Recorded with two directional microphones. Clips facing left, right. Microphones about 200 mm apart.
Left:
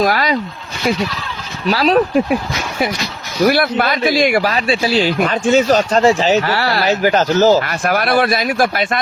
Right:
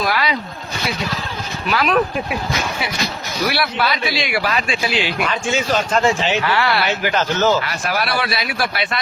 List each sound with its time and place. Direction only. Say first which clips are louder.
0.0 s speech: left 5 dB; 45° left (ahead or behind)
1.6 s speech: left 5 dB; 35° left (ahead or behind)
3.4 s speech: left 7 dB; 45° left (ahead or behind)